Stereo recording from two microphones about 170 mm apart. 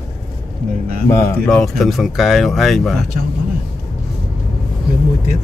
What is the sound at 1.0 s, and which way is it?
Speech, 15° left (ahead or behind).